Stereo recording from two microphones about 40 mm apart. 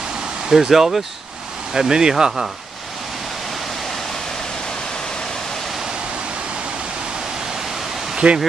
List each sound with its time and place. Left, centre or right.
0.5 s speech: centre
8.2 s speech: right